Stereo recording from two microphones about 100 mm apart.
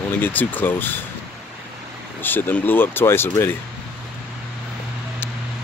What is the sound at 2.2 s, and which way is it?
Speech, 20° left (ahead or behind).